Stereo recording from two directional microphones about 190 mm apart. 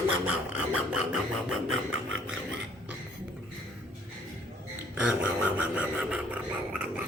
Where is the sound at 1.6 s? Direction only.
90° right.